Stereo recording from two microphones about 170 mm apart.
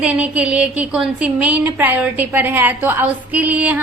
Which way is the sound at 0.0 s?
10° right (ahead or behind).